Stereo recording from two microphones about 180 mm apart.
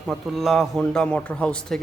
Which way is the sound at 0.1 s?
Centre (ahead or behind).